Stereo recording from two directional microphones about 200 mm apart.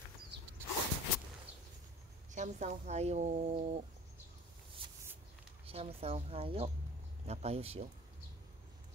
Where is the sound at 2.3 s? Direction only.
35° right (ahead or behind).